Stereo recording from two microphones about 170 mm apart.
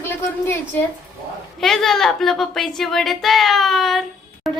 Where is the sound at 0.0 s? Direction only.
15° left (ahead or behind).